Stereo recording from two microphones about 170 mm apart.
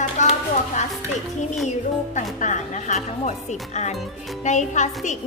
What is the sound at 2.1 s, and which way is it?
Speech, 45° left (ahead or behind).